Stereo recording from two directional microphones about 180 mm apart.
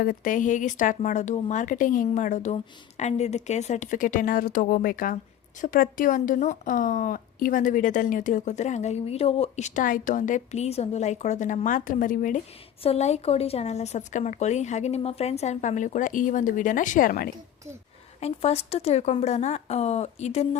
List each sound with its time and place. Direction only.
0.0 s speech: 50° left (ahead or behind)
12.8 s speech: 35° left (ahead or behind)
18.2 s speech: 35° left (ahead or behind)